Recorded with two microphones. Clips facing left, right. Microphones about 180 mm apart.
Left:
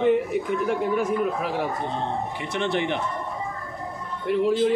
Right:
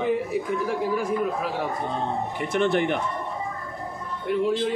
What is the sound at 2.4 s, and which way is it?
Speech, 50° right (ahead or behind).